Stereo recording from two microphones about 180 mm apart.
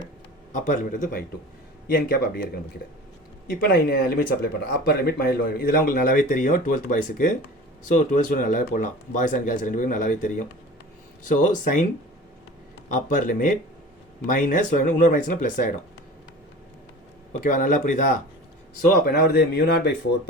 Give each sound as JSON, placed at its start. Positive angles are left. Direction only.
{"t": 0.5, "sound": "speech", "side_deg": 45}
{"t": 3.4, "sound": "speech", "side_deg": 55}
{"t": 12.9, "sound": "speech", "side_deg": 45}
{"t": 17.4, "sound": "speech", "side_deg": 50}
{"t": 19.1, "sound": "speech", "side_deg": 60}